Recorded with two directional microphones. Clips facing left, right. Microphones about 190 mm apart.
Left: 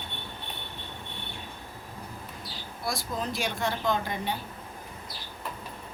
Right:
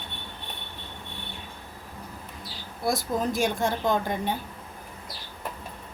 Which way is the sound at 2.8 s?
50° right (ahead or behind).